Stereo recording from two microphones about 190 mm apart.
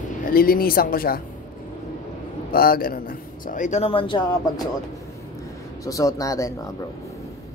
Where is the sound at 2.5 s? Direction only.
50° left (ahead or behind); by 4.2 s 30° left (ahead or behind).